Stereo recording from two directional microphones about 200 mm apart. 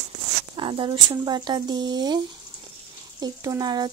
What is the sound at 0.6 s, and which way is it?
Speech, 25° right (ahead or behind).